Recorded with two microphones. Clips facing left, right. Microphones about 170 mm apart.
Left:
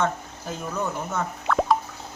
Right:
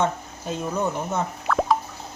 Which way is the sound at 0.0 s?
20° right (ahead or behind).